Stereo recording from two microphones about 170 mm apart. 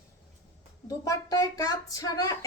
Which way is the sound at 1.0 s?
20° left (ahead or behind).